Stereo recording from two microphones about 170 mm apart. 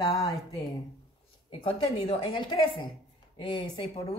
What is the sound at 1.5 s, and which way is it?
A woman's voice, 35° left (ahead or behind).